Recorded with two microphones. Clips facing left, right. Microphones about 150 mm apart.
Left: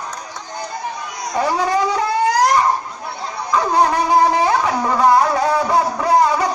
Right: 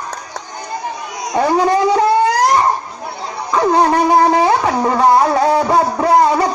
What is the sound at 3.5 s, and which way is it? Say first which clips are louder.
Wind instrument: right 3 dB; 35° right (ahead or behind).